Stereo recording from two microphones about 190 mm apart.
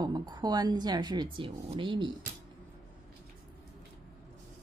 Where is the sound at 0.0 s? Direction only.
20° right (ahead or behind).